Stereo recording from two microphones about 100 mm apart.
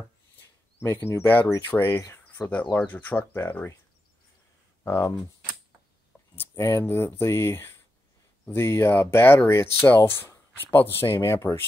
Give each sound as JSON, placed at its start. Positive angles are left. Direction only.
{"t": 0.7, "sound": "speech", "side_deg": 20}
{"t": 2.9, "sound": "speech", "side_deg": 15}
{"t": 4.8, "sound": "speech", "side_deg": 30}
{"t": 6.5, "sound": "speech", "side_deg": 30}